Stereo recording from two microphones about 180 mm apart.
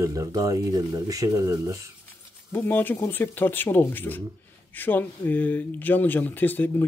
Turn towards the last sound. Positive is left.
turn(degrees=10)  # may be behind; listen again after turning